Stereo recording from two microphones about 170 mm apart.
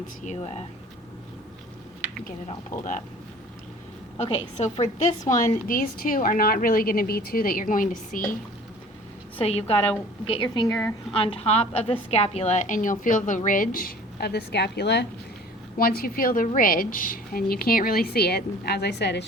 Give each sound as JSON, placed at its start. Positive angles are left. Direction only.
{"t": 0.3, "sound": "a woman's voice", "side_deg": 40}
{"t": 2.7, "sound": "a woman's voice", "side_deg": 50}
{"t": 4.2, "sound": "a woman's voice", "side_deg": 35}
{"t": 9.4, "sound": "a woman's voice", "side_deg": 35}
{"t": 11.1, "sound": "a woman's voice", "side_deg": 35}
{"t": 15.8, "sound": "a woman's voice", "side_deg": 55}